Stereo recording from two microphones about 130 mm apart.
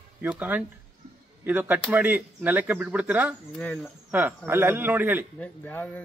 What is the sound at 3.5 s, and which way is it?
Speech, 5° left (ahead or behind).